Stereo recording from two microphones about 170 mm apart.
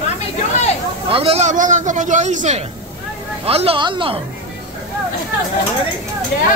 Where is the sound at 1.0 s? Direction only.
35° right (ahead or behind).